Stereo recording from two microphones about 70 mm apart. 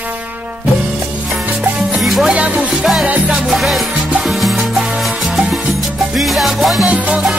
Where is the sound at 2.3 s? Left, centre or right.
Centre.